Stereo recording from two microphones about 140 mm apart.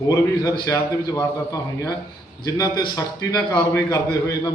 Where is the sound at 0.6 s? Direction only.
25° left (ahead or behind).